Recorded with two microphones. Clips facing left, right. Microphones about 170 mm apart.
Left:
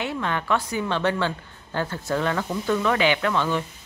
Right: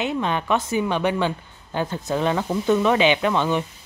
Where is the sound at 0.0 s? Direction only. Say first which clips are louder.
Right 3 dB; 20° right (ahead or behind).